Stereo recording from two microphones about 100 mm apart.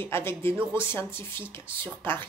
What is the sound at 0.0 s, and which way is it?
Speech, 25° left (ahead or behind).